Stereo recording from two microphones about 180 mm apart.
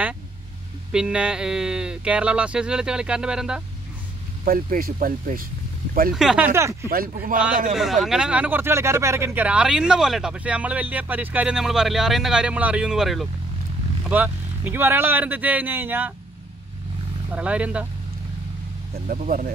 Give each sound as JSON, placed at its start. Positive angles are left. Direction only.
{"t": 0.9, "sound": "speech", "side_deg": -5}
{"t": 4.5, "sound": "speech", "side_deg": -55}
{"t": 6.1, "sound": "speech", "side_deg": -5}
{"t": 8.0, "sound": "speech", "side_deg": -5}
{"t": 17.3, "sound": "speech", "side_deg": -5}
{"t": 19.0, "sound": "speech", "side_deg": -50}